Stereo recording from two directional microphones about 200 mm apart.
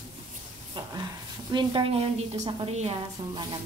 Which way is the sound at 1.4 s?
25° right (ahead or behind).